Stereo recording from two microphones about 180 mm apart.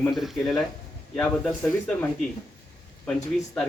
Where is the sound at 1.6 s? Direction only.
10° left (ahead or behind).